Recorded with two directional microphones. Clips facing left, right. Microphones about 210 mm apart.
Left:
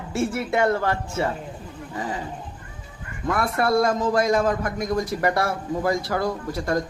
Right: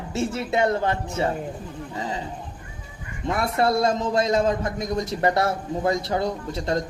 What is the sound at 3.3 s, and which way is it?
A man's voice, 25° right (ahead or behind).